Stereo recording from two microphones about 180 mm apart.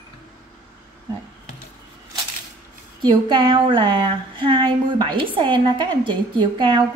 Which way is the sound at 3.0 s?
25° right (ahead or behind).